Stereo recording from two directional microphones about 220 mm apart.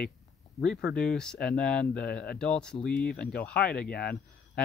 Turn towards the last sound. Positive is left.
turn(degrees=45)  # may be behind; listen again after turning